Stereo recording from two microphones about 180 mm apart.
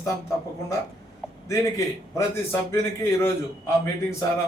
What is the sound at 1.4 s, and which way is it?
Speech, 15° left (ahead or behind).